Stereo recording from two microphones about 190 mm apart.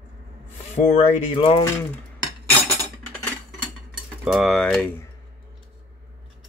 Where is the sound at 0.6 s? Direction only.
35° left (ahead or behind).